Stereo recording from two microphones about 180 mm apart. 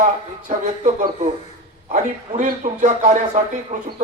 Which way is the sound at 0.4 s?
45° right (ahead or behind).